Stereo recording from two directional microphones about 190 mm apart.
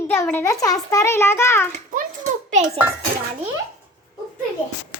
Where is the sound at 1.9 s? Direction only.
45° right (ahead or behind).